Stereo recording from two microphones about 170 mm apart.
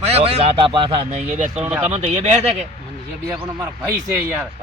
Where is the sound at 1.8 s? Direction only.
40° right (ahead or behind).